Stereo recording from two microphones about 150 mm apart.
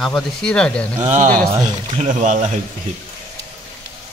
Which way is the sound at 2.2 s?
55° right (ahead or behind).